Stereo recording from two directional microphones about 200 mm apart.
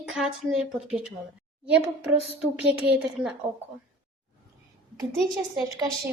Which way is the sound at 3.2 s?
Centre (ahead or behind).